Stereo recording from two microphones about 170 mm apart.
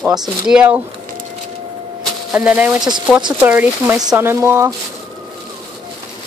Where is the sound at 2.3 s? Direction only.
10° right (ahead or behind).